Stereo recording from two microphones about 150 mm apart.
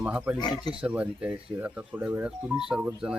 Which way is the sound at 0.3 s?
30° left (ahead or behind).